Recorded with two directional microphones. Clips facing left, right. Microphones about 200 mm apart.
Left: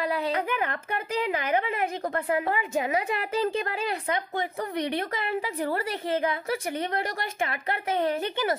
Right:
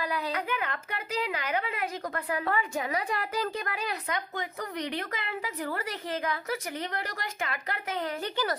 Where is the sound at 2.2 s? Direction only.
25° left (ahead or behind).